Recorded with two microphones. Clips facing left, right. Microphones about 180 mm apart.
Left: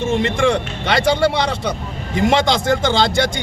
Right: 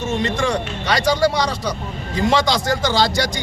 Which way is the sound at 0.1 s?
30° left (ahead or behind).